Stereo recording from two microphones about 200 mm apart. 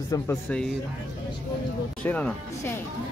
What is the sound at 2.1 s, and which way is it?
Speech, 5° left (ahead or behind).